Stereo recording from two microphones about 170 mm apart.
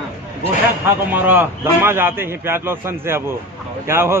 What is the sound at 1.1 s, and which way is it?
A man's voice, 10° right (ahead or behind).